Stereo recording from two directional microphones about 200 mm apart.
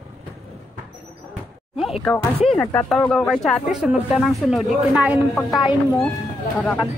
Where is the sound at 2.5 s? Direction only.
5° left (ahead or behind).